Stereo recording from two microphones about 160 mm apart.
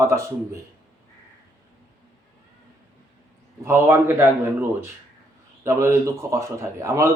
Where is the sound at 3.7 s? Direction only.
15° right (ahead or behind).